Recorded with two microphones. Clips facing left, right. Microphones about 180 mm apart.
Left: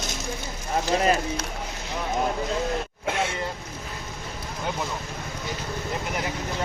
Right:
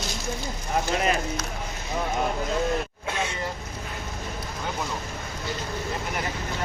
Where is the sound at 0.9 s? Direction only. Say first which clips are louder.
Left 5 dB; 30° left (ahead or behind).